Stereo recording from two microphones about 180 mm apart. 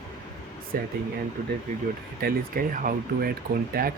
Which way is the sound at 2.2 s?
50° right (ahead or behind).